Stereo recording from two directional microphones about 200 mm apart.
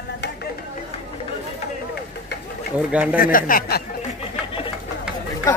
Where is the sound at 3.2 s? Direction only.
45° left (ahead or behind).